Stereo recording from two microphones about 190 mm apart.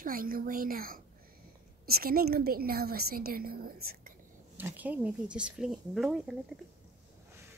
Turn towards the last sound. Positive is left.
turn(degrees=-5)  # may be behind; listen again after turning